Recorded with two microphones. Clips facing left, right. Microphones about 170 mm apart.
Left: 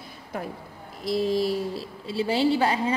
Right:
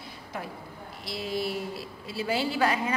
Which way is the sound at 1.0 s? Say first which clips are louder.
Left 8 dB; 40° left (ahead or behind).